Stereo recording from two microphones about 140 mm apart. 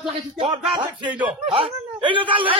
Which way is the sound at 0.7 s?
30° right (ahead or behind).